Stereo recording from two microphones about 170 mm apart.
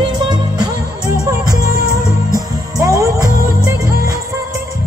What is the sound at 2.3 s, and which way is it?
Music, 20° right (ahead or behind).